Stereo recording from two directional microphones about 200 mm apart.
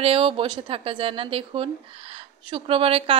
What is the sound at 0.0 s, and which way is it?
A woman's voice, 30° right (ahead or behind).